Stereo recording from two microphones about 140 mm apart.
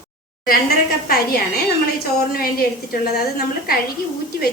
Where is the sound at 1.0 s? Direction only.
90° left.